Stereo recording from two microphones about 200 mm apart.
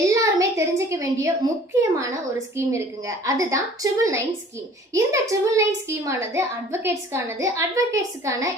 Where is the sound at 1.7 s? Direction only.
15° right (ahead or behind).